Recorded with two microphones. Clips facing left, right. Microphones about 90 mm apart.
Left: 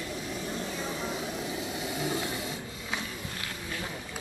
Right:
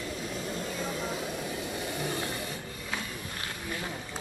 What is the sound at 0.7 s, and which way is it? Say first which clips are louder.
Vehicle: even; 20° left (ahead or behind).